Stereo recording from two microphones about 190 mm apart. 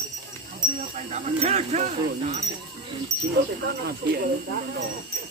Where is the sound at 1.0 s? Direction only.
35° right (ahead or behind).